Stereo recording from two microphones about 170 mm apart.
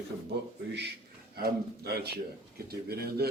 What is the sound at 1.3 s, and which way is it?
A man's voice, 65° right (ahead or behind).